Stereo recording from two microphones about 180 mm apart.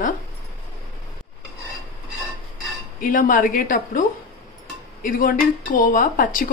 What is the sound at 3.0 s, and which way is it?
Speech, 50° left (ahead or behind).